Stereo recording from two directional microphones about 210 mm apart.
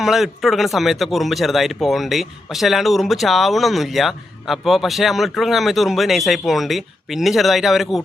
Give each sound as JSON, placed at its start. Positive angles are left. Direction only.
{"t": 0.0, "sound": "speech", "side_deg": 0}